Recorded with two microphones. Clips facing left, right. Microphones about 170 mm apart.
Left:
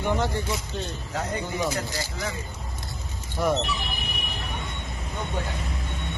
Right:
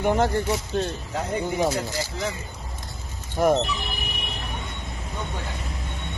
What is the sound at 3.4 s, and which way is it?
Speech, 50° right (ahead or behind).